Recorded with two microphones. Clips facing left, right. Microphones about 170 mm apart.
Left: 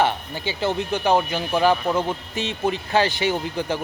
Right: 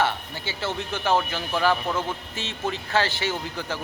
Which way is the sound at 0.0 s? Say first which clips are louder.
Left 4 dB; 15° left (ahead or behind).